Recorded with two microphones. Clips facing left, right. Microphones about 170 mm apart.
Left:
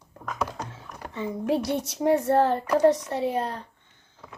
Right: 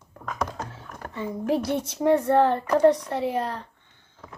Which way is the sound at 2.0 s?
25° left (ahead or behind).